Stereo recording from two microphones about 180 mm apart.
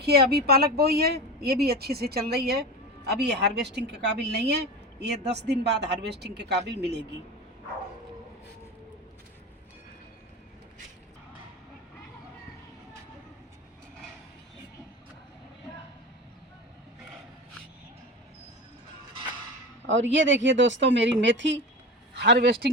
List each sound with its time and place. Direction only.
0.0 s a woman's voice: 60° right (ahead or behind)
19.9 s speech: 90° right
22.1 s a man's voice: 70° right (ahead or behind)